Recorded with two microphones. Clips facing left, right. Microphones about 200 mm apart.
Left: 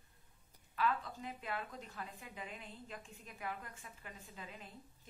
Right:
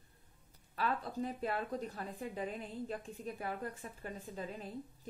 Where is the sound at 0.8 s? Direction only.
40° right (ahead or behind).